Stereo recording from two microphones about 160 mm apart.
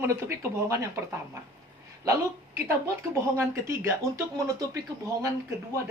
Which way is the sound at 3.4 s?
15° right (ahead or behind).